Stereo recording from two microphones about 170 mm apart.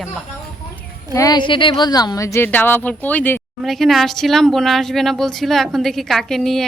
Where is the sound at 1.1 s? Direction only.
20° left (ahead or behind).